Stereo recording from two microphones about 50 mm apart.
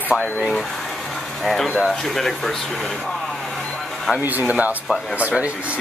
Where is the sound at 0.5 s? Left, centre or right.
Centre.